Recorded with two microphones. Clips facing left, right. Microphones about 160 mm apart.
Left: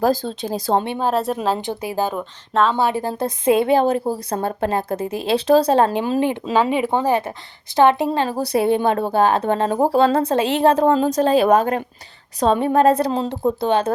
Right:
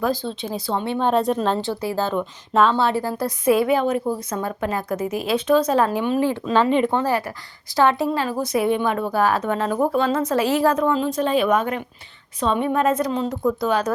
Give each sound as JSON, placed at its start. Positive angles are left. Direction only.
{"t": 0.0, "sound": "a woman's voice", "side_deg": 45}
{"t": 0.9, "sound": "speech", "side_deg": 5}
{"t": 1.5, "sound": "speech", "side_deg": 20}
{"t": 2.5, "sound": "speech", "side_deg": 0}
{"t": 2.7, "sound": "a woman's voice", "side_deg": 15}